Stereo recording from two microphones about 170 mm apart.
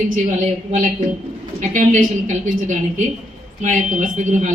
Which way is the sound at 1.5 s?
45° right (ahead or behind).